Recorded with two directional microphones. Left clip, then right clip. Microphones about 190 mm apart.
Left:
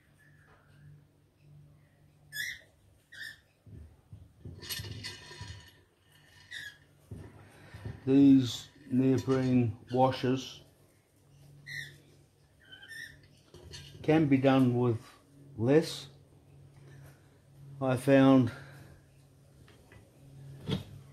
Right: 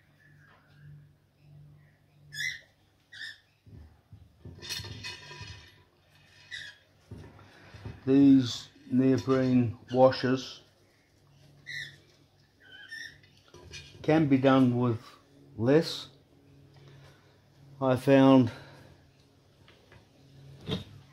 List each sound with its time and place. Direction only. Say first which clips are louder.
8.0 s speech: right 1 dB; 25° right (ahead or behind)
14.0 s speech: right 2 dB; 30° right (ahead or behind)
17.7 s speech: right 2 dB; 30° right (ahead or behind)